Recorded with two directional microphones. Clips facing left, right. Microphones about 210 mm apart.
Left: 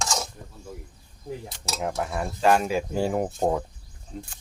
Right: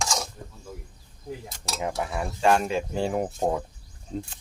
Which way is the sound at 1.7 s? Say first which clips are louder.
Left 1 dB; centre (ahead or behind).